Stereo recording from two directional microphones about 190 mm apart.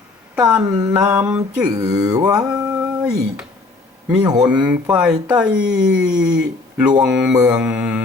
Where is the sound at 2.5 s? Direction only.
5° right (ahead or behind).